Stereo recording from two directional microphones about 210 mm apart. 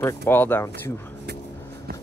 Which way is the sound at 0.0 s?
10° left (ahead or behind).